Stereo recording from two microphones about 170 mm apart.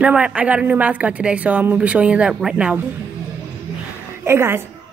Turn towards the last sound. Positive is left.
turn(degrees=-15)  # may be behind; listen again after turning